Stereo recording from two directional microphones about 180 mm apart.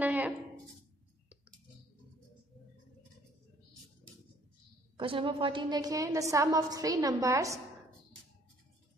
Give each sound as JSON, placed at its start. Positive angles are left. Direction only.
{"t": 0.0, "sound": "speech", "side_deg": -10}
{"t": 4.9, "sound": "a woman's voice", "side_deg": -30}